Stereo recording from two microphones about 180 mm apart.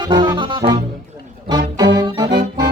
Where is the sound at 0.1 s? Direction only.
25° right (ahead or behind).